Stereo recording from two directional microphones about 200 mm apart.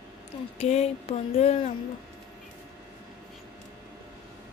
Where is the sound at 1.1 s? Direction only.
30° left (ahead or behind).